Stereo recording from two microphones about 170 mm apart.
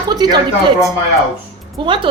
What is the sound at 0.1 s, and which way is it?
Speech, 25° right (ahead or behind).